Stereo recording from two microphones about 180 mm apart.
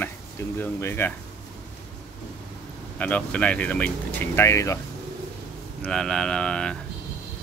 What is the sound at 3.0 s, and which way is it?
Speech, 10° left (ahead or behind).